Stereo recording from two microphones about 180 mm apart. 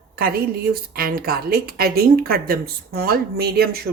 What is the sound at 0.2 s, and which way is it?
A woman's voice, 55° right (ahead or behind).